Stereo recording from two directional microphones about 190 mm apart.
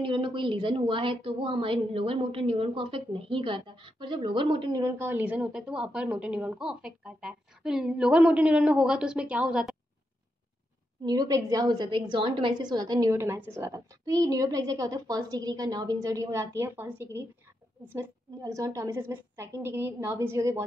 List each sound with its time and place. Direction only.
0.0 s a woman's voice: 25° right (ahead or behind)
4.8 s a woman's voice: 10° right (ahead or behind)
11.1 s a woman's voice: 20° right (ahead or behind)